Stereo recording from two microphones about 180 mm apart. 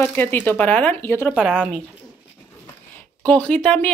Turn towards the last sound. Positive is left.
turn(degrees=5)  # may be behind; listen again after turning